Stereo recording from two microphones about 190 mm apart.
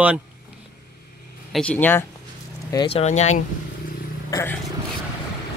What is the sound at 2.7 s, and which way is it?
Speech, 30° left (ahead or behind).